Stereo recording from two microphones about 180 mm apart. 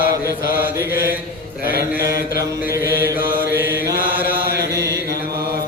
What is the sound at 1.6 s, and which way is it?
Mantra, 55° left (ahead or behind).